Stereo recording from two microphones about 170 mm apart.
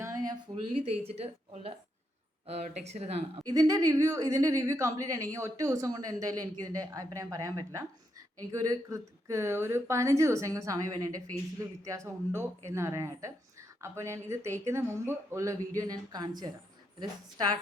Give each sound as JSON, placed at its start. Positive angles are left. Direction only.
{"t": 0.0, "sound": "a sound", "side_deg": -20}
{"t": 0.5, "sound": "speech", "side_deg": -35}
{"t": 3.5, "sound": "a man's voice", "side_deg": -20}